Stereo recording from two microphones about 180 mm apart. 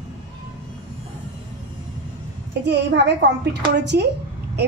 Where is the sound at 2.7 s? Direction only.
70° right (ahead or behind).